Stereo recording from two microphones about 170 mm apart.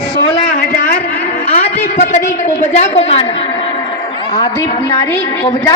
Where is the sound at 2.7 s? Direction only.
40° left (ahead or behind).